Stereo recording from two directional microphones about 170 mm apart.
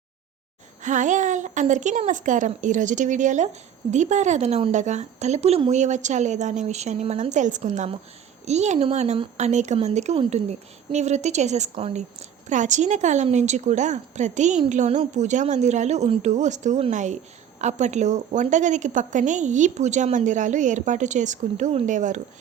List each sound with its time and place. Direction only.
0.8 s speech: 45° right (ahead or behind)